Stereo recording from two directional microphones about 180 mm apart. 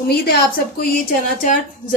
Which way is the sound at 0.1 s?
60° left (ahead or behind).